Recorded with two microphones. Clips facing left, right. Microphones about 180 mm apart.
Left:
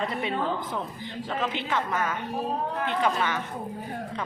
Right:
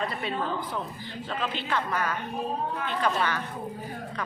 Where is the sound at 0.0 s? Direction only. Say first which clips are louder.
Left 2 dB; 20° left (ahead or behind).